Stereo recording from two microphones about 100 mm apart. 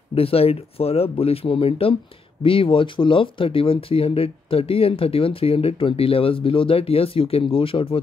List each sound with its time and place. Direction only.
0.1 s speech: 75° left (ahead or behind)